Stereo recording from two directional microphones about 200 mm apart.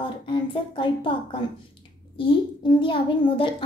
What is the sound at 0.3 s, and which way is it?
A child's voice, 25° left (ahead or behind).